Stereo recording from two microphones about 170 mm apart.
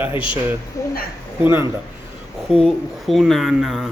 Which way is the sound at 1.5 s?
15° right (ahead or behind).